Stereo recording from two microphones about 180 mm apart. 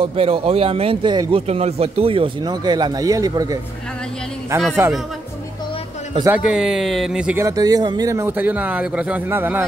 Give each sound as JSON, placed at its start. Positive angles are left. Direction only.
{"t": 0.0, "sound": "speech", "side_deg": -30}
{"t": 4.8, "sound": "speech", "side_deg": -15}
{"t": 6.3, "sound": "speech", "side_deg": -5}
{"t": 7.4, "sound": "speech", "side_deg": -20}